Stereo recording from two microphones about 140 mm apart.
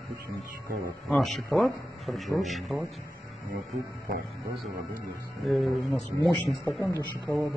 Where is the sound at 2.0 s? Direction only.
Centre (ahead or behind).